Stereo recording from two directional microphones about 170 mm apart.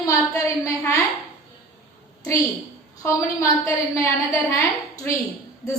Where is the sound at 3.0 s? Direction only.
15° left (ahead or behind).